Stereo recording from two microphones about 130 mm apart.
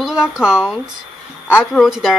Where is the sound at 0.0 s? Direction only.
5° right (ahead or behind).